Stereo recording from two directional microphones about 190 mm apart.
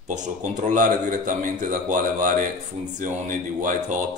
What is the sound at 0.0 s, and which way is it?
Speech, 40° right (ahead or behind).